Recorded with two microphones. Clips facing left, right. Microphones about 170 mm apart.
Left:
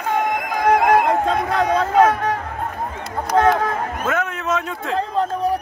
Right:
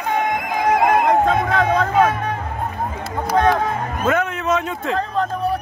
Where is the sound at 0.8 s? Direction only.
Centre (ahead or behind).